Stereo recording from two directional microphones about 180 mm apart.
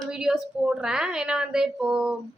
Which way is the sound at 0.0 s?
5° right (ahead or behind).